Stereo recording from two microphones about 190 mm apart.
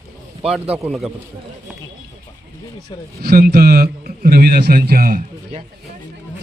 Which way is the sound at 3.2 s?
55° right (ahead or behind).